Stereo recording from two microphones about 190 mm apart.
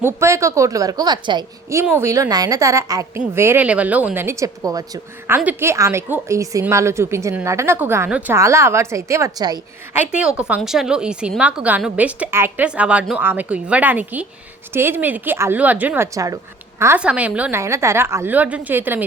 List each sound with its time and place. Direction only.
0.0 s a woman's voice: 15° right (ahead or behind)
10.0 s a woman's voice: 5° right (ahead or behind)